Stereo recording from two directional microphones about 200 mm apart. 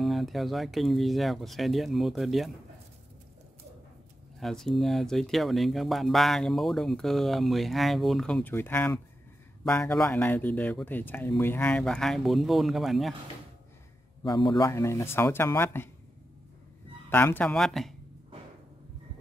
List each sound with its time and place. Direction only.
0.0 s speech: centre (ahead or behind)
4.4 s speech: centre (ahead or behind)
14.2 s a man's voice: 20° left (ahead or behind)
17.1 s speech: 10° left (ahead or behind)